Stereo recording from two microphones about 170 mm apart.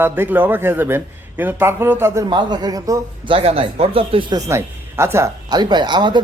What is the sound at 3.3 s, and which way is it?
Speech, 35° right (ahead or behind).